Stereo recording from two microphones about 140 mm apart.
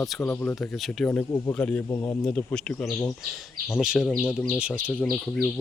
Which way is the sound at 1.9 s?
25° left (ahead or behind).